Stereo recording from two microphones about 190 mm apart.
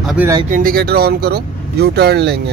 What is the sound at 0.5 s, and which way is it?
Speech, 50° right (ahead or behind).